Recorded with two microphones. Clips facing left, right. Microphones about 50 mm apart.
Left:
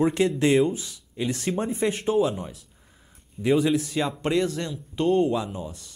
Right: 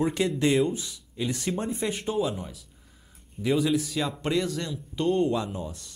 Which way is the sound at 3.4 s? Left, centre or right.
Centre.